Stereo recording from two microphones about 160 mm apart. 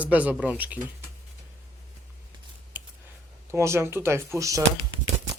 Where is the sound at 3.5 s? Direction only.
15° right (ahead or behind).